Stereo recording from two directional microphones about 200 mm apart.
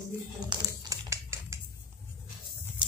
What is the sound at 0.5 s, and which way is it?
Typing, 15° right (ahead or behind).